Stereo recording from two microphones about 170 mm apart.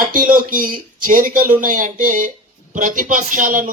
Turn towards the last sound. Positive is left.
turn(degrees=-50)  # may be behind; listen again after turning